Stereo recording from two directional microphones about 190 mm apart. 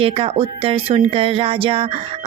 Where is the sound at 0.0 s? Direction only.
30° right (ahead or behind).